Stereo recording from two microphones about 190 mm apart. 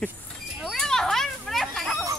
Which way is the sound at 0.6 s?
Centre (ahead or behind).